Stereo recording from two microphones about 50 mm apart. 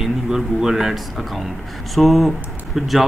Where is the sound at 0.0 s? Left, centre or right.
Centre.